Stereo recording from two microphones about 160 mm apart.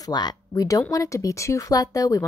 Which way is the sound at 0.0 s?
25° left (ahead or behind).